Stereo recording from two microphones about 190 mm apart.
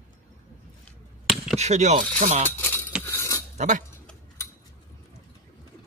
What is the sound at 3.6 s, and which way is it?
Speech, 40° right (ahead or behind).